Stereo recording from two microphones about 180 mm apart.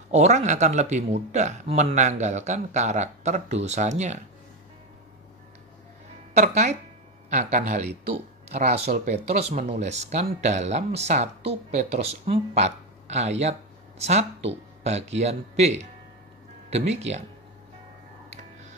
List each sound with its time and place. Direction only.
0.1 s speech: 40° right (ahead or behind)
6.3 s speech: 40° right (ahead or behind)